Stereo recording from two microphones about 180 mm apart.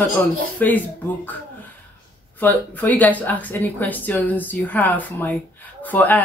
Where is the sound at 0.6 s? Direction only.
10° left (ahead or behind).